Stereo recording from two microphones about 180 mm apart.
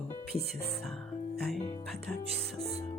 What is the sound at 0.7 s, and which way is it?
Speech, 5° left (ahead or behind).